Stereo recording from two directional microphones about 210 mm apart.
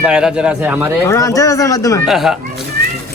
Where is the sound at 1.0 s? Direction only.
15° left (ahead or behind).